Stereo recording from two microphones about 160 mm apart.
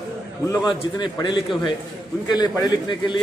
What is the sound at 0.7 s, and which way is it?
Speech, 30° left (ahead or behind).